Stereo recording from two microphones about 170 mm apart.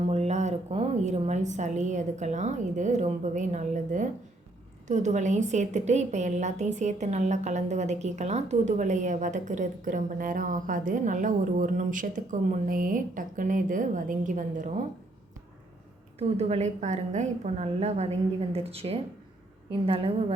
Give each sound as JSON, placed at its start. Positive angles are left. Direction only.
{"t": 0.1, "sound": "a woman's voice", "side_deg": -40}
{"t": 16.1, "sound": "a woman's voice", "side_deg": -40}